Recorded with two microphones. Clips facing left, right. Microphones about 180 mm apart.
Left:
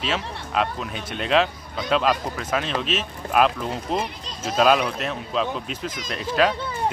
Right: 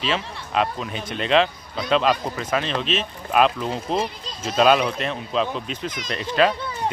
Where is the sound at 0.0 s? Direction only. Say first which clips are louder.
Right 1 dB; centre (ahead or behind).